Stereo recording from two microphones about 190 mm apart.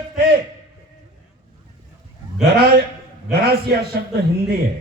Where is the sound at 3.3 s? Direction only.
55° right (ahead or behind).